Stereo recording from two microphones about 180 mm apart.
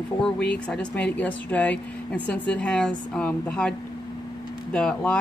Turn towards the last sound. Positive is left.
turn(degrees=5)  # may be behind; listen again after turning